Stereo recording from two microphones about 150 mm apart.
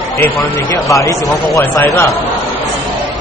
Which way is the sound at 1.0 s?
20° left (ahead or behind).